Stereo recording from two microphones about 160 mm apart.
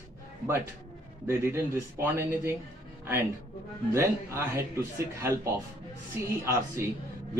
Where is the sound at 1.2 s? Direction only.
15° right (ahead or behind).